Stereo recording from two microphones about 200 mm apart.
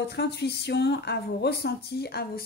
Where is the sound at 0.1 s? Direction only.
55° left (ahead or behind).